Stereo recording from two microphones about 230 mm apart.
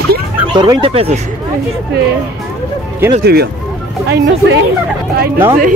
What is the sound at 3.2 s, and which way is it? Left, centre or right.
Speech, right.